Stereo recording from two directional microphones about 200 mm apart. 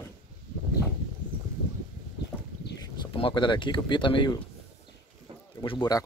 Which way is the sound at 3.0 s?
25° left (ahead or behind).